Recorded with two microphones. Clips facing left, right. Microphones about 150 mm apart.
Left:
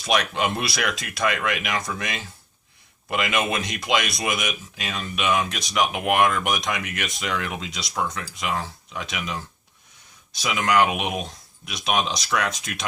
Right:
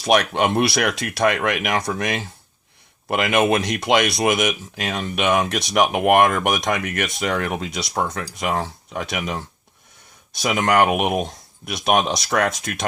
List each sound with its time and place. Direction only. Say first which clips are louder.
0.1 s speech: right 5 dB; 55° right (ahead or behind)
3.6 s speech: right 6 dB; 65° right (ahead or behind)